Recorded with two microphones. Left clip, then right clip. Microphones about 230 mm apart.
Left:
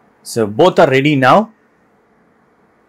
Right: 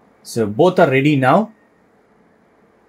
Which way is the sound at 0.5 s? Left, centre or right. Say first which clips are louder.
Left 3 dB; left.